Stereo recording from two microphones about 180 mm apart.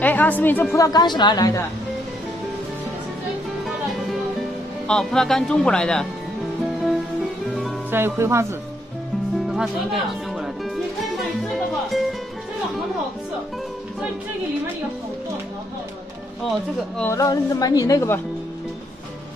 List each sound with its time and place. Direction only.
0.0 s a woman's voice: 10° left (ahead or behind)
0.7 s speech: 20° left (ahead or behind)
4.4 s speech: 5° left (ahead or behind)
7.9 s speech: 15° right (ahead or behind)
9.5 s speech: centre (ahead or behind)
11.1 s music: centre (ahead or behind)
17.0 s speech: 15° left (ahead or behind)